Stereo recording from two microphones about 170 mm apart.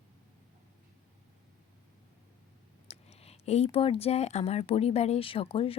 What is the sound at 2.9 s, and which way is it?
Speech, 35° left (ahead or behind).